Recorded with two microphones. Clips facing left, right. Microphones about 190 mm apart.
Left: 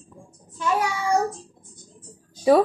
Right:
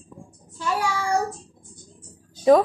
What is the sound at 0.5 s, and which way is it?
Child singing, 20° left (ahead or behind).